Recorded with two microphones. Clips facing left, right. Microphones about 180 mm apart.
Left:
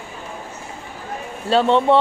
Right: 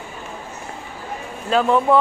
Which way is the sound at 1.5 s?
30° left (ahead or behind).